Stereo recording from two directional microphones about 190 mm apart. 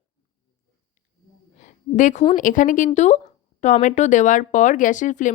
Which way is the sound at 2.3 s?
45° left (ahead or behind).